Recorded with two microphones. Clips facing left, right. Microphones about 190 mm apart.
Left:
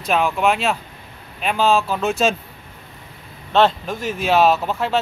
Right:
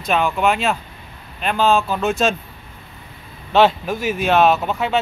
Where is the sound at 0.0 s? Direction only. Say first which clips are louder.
Even; centre (ahead or behind).